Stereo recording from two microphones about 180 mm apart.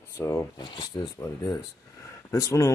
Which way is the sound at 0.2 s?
15° left (ahead or behind).